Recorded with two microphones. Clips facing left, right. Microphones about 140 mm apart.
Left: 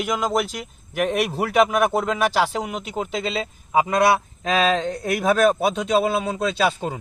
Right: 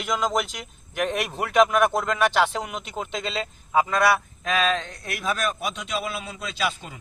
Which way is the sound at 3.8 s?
20° left (ahead or behind).